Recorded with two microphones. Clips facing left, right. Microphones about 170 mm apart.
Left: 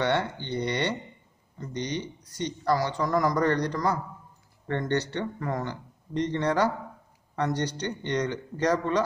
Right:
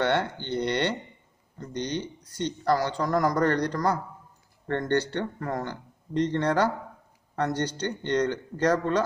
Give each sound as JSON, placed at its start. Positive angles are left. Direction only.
{"t": 0.0, "sound": "a sound", "side_deg": -60}
{"t": 0.6, "sound": "speech", "side_deg": -60}
{"t": 1.8, "sound": "speech", "side_deg": 15}
{"t": 2.6, "sound": "speech", "side_deg": -55}